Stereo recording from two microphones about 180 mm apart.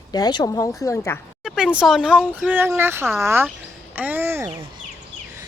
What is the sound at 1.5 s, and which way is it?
Speech, 5° right (ahead or behind).